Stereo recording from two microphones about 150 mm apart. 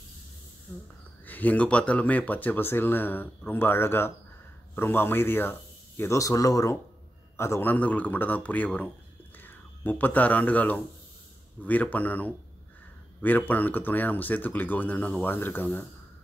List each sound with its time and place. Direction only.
0.7 s speech: 10° left (ahead or behind)